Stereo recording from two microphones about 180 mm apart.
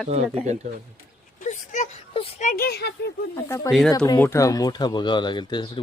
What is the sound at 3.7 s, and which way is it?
Speech, centre (ahead or behind).